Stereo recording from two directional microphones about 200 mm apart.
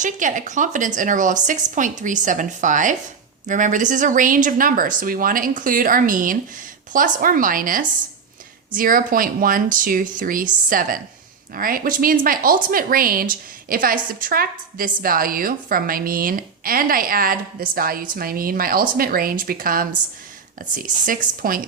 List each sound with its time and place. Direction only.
0.0 s a woman's voice: 40° right (ahead or behind)